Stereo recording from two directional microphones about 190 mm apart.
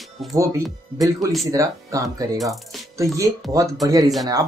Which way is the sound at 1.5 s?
20° right (ahead or behind).